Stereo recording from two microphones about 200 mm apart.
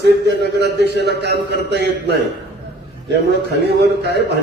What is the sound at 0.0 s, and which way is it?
A man's voice, 55° right (ahead or behind).